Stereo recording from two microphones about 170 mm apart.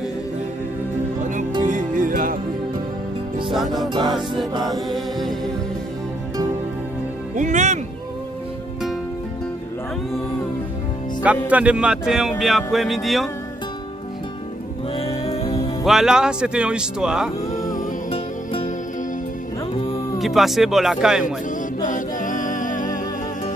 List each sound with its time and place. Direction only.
1.6 s music: 50° right (ahead or behind)
7.3 s speech: 45° right (ahead or behind)
11.2 s speech: 10° right (ahead or behind)
15.0 s music: 35° left (ahead or behind)
15.8 s speech: centre (ahead or behind)
17.5 s humming: 20° left (ahead or behind)
20.2 s speech: centre (ahead or behind)
21.8 s music: 50° left (ahead or behind)